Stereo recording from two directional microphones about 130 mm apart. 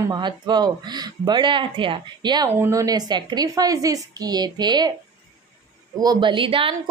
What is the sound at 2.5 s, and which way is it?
A woman's voice, 20° right (ahead or behind).